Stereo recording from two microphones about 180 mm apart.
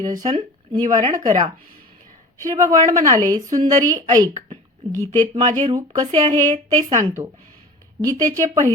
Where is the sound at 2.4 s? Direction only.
20° right (ahead or behind).